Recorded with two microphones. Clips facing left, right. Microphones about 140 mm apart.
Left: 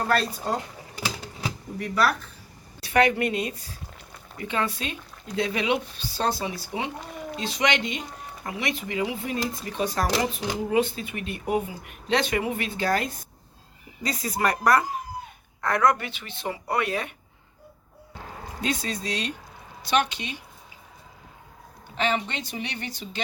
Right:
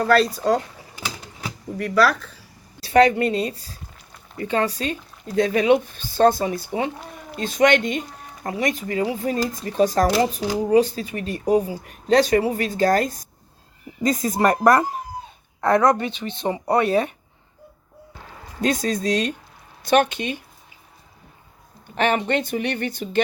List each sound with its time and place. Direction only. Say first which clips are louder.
0.1 s speech: right 10 dB; 90° right
1.8 s speech: right 5 dB; 90° right
2.8 s speech: right 6 dB; 35° right (ahead or behind)
15.6 s a woman's voice: right 5 dB; 25° right (ahead or behind)
18.6 s speech: right 8 dB; 45° right (ahead or behind)
21.9 s speech: right 6 dB; 55° right (ahead or behind)